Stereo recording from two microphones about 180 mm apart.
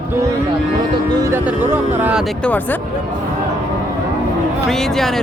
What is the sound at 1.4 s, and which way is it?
Speech, 10° right (ahead or behind).